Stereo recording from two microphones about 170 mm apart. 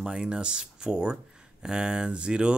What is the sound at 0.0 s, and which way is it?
Speech, 5° right (ahead or behind).